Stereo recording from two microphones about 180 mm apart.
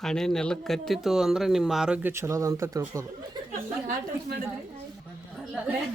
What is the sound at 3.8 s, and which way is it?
Speech, 50° right (ahead or behind).